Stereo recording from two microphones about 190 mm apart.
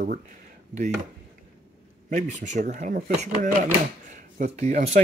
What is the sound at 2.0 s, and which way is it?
Speech, 40° right (ahead or behind).